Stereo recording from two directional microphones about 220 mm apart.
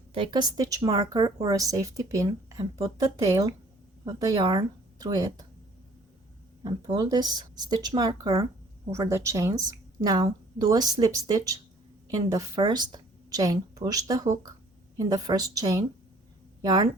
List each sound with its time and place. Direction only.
0.1 s a woman's voice: 20° right (ahead or behind)
6.6 s a woman's voice: 20° right (ahead or behind)